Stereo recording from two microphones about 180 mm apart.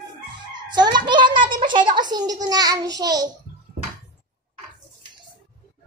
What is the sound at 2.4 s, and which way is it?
Speech, 20° right (ahead or behind).